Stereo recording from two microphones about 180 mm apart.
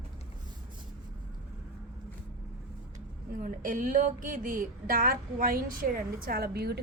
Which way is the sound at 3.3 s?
50° right (ahead or behind).